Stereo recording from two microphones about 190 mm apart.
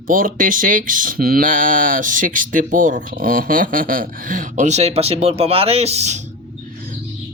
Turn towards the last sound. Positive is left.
turn(degrees=-35)  # may be behind; listen again after turning